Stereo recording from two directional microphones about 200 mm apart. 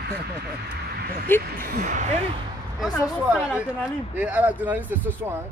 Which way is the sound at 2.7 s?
Centre (ahead or behind).